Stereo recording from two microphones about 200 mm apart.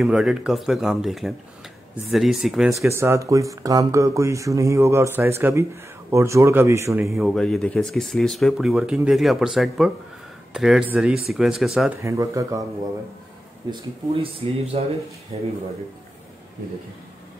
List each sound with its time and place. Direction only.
0.0 s speech: centre (ahead or behind)
2.9 s speech: 15° right (ahead or behind)
7.1 s speech: centre (ahead or behind)
12.0 s speech: 15° right (ahead or behind)
13.7 s speech: 25° right (ahead or behind)